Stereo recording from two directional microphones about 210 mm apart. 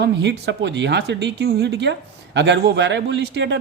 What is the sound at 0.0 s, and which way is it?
Speech, 55° right (ahead or behind).